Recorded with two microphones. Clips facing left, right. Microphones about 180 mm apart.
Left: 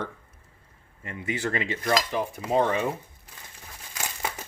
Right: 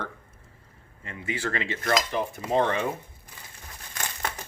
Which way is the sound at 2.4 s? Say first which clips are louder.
Left 1 dB; 10° left (ahead or behind).